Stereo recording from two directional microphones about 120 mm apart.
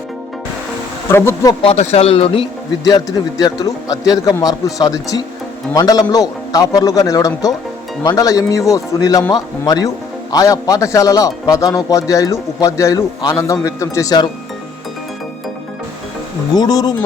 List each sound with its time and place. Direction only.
1.1 s a man's voice: 20° left (ahead or behind)
1.6 s speech: 65° left (ahead or behind)
2.8 s a man's voice: 30° left (ahead or behind)
16.6 s a man's voice: 35° left (ahead or behind)